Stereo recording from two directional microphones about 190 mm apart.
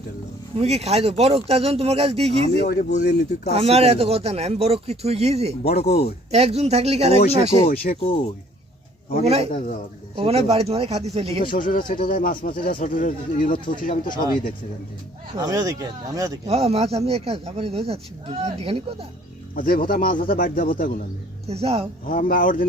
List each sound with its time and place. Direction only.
0.5 s speech: 35° right (ahead or behind)
2.6 s speech: 45° left (ahead or behind)
3.0 s speech: 60° left (ahead or behind)
3.5 s speech: 30° right (ahead or behind)
7.7 s speech: 50° left (ahead or behind)
9.2 s speech: 35° right (ahead or behind)
9.5 s a man's voice: 40° left (ahead or behind)
10.2 s speech: 30° right (ahead or behind)
11.4 s speech: 45° left (ahead or behind)
15.4 s speech: 20° right (ahead or behind)
16.5 s speech: 30° right (ahead or behind)
19.5 s speech: 50° left (ahead or behind)
21.4 s speech: 30° right (ahead or behind)
22.0 s speech: 45° left (ahead or behind)